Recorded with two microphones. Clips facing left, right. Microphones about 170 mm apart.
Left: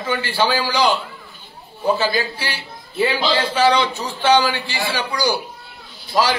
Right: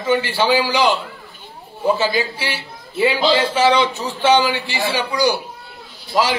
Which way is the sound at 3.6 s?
20° right (ahead or behind).